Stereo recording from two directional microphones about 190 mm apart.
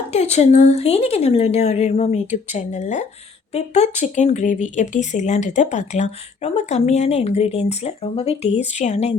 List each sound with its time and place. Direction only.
0.1 s speech: 35° left (ahead or behind)